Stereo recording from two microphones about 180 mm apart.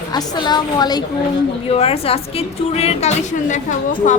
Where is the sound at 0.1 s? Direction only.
25° left (ahead or behind).